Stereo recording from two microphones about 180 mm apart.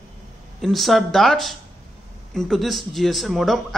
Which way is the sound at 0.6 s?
Centre (ahead or behind).